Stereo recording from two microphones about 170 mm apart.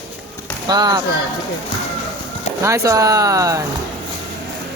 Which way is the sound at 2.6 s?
15° right (ahead or behind).